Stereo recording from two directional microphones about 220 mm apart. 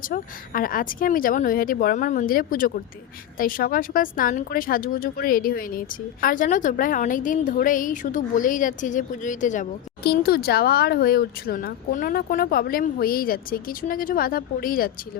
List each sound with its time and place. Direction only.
0.0 s a woman's voice: 40° left (ahead or behind)